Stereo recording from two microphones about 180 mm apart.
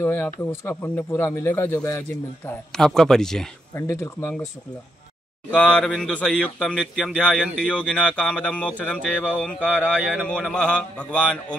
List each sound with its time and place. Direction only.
0.0 s a man's voice: 10° left (ahead or behind)
3.7 s speech: 15° left (ahead or behind)
5.6 s a man's voice: 5° left (ahead or behind)
9.2 s a man's voice: 5° right (ahead or behind)
9.5 s speech: 5° left (ahead or behind)
9.9 s a man's voice: 5° right (ahead or behind)